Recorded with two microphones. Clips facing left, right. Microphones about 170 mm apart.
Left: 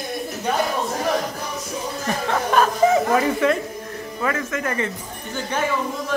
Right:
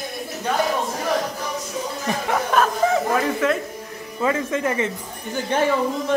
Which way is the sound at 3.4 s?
Centre (ahead or behind).